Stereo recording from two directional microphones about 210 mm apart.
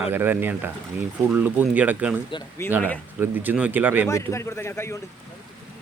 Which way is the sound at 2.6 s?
10° left (ahead or behind).